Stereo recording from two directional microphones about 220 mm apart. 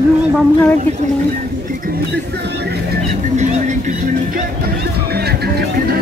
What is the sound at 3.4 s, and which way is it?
Speech, 35° right (ahead or behind).